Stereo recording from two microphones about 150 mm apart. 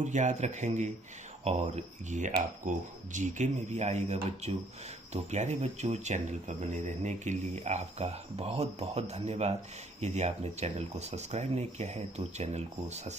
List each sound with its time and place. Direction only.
0.0 s speech: 55° right (ahead or behind)